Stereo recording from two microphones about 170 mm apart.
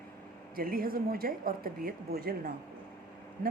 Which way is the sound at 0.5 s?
60° right (ahead or behind).